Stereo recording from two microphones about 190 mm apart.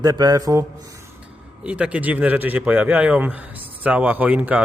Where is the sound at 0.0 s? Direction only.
20° right (ahead or behind).